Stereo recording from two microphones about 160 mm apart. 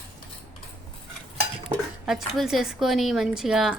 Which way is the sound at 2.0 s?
Centre (ahead or behind).